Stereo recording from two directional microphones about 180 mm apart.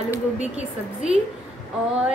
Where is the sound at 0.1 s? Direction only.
10° right (ahead or behind).